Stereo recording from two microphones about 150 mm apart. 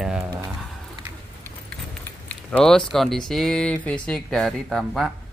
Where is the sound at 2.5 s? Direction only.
5° left (ahead or behind).